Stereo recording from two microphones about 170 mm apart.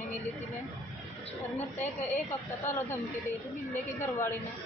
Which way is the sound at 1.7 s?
15° left (ahead or behind).